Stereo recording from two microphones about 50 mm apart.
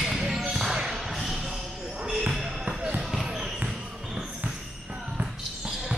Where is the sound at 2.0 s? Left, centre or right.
Centre.